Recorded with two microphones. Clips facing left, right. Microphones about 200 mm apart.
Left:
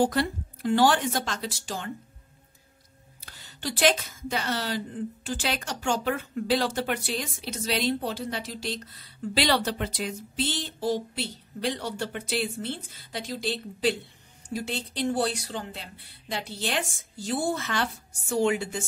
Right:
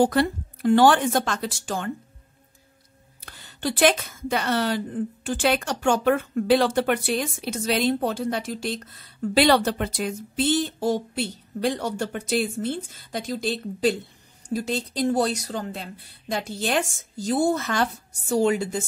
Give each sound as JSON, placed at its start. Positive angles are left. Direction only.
{"t": 0.0, "sound": "a woman's voice", "side_deg": -55}
{"t": 3.3, "sound": "a woman's voice", "side_deg": -55}